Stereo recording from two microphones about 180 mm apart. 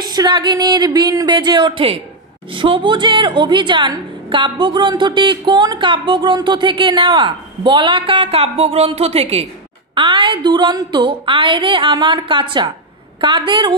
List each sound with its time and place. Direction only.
0.0 s a woman's voice: 25° right (ahead or behind)